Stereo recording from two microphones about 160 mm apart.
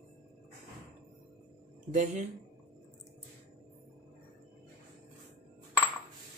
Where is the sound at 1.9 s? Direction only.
50° right (ahead or behind).